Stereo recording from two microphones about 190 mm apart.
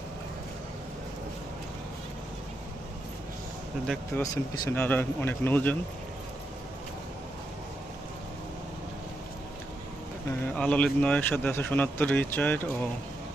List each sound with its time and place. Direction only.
3.8 s speech: 10° left (ahead or behind)
4.8 s speech: 10° left (ahead or behind)
10.2 s speech: 5° left (ahead or behind)